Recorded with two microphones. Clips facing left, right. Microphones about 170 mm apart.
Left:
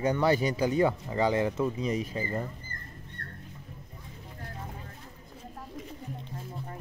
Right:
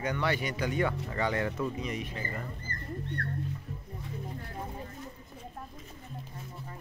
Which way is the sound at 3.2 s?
75° right (ahead or behind).